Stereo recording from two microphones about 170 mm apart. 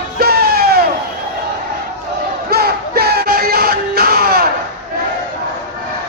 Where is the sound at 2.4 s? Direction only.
65° right (ahead or behind).